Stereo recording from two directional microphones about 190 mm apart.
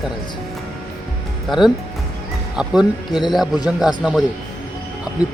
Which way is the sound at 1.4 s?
Centre (ahead or behind).